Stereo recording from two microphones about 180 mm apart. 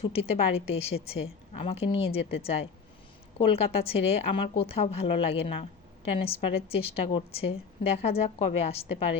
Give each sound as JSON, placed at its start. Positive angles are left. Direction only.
{"t": 0.0, "sound": "a woman's voice", "side_deg": 30}